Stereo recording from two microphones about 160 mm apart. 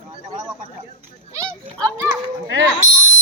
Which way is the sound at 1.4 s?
20° right (ahead or behind).